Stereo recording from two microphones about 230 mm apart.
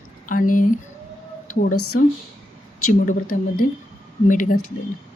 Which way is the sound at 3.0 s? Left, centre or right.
Left.